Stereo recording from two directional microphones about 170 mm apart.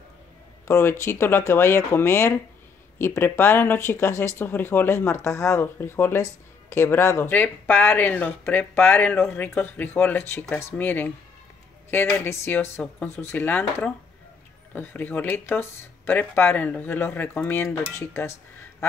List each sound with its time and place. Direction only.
0.7 s speech: 15° left (ahead or behind)